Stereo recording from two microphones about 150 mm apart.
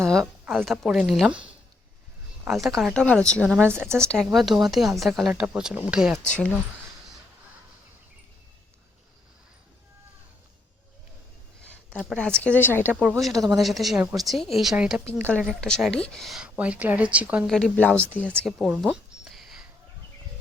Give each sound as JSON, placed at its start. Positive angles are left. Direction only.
{"t": 0.0, "sound": "a sound", "side_deg": 0}
{"t": 0.5, "sound": "speech", "side_deg": 0}
{"t": 2.5, "sound": "speech", "side_deg": 0}
{"t": 3.6, "sound": "a woman's voice", "side_deg": -15}
{"t": 4.0, "sound": "speech", "side_deg": 5}
{"t": 11.9, "sound": "speech", "side_deg": 5}
{"t": 13.0, "sound": "speech", "side_deg": 0}
{"t": 17.4, "sound": "speech", "side_deg": 5}